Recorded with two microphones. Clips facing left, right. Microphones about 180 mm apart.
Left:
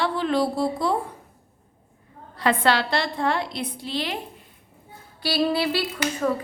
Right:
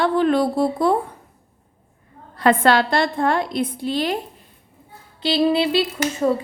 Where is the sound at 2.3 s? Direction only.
50° right (ahead or behind).